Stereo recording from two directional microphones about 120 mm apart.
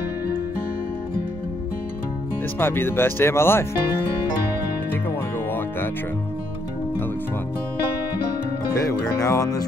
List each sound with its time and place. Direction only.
2.6 s speech: 20° left (ahead or behind)
8.7 s speech: 25° left (ahead or behind)